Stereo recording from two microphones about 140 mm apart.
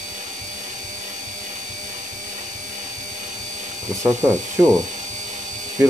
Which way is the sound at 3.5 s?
60° right (ahead or behind).